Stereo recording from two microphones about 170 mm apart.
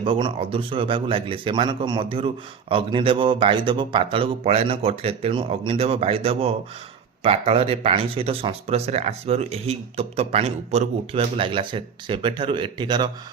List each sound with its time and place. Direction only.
0.0 s a man's voice: 30° right (ahead or behind)